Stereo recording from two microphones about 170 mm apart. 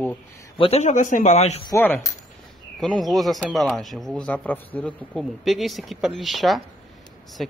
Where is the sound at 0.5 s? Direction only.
35° left (ahead or behind).